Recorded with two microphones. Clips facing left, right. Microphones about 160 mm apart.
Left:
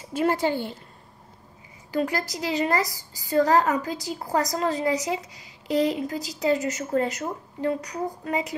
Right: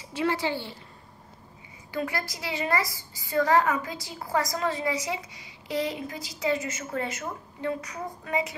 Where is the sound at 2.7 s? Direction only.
40° left (ahead or behind).